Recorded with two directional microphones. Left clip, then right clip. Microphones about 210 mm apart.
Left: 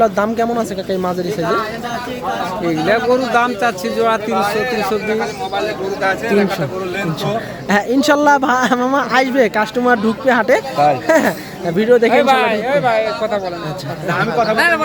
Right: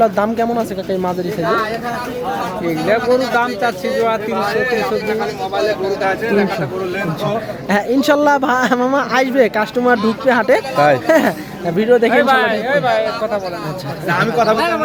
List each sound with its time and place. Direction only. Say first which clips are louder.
0.0 s speech: even; 5° left (ahead or behind)
2.6 s speech: left 1 dB; 35° left (ahead or behind)
4.4 s a man's voice: even; 45° left (ahead or behind)
7.7 s speech: left 1 dB; 10° left (ahead or behind)
12.1 s a man's voice: even; 30° left (ahead or behind)
14.2 s speech: right 1 dB; 55° right (ahead or behind)